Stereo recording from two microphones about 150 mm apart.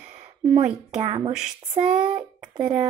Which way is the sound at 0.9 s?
45° right (ahead or behind).